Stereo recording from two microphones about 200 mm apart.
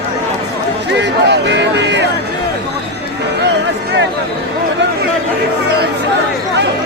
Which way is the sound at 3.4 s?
60° right (ahead or behind).